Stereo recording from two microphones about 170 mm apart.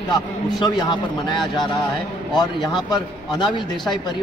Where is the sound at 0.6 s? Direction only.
25° left (ahead or behind).